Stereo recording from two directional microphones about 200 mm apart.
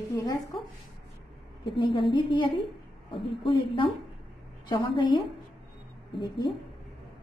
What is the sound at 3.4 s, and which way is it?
Speech, 25° left (ahead or behind).